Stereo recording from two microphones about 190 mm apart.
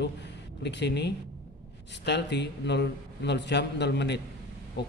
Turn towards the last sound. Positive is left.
turn(degrees=65)  # may be behind; listen again after turning